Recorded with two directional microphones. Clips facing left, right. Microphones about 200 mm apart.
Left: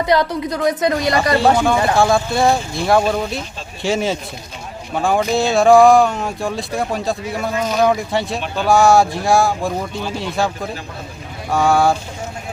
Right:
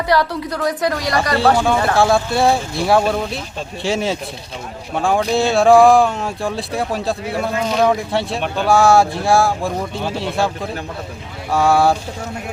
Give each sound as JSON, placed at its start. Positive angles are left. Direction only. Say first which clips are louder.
{"t": 0.0, "sound": "speech", "louder": "left 1 dB", "side_deg": 20}
{"t": 2.0, "sound": "speech", "louder": "even", "side_deg": 0}